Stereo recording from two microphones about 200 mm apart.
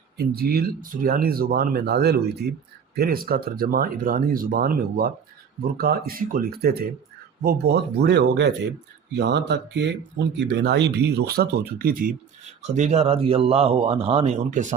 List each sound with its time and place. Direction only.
0.2 s speech: 50° right (ahead or behind)
12.5 s a man's voice: 35° right (ahead or behind)